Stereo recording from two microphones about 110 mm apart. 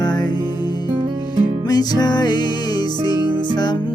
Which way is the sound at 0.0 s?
40° left (ahead or behind).